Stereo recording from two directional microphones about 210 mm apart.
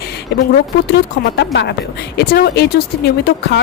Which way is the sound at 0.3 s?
50° left (ahead or behind).